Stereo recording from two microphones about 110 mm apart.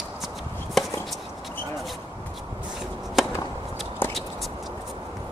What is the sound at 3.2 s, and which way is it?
Chop, centre (ahead or behind).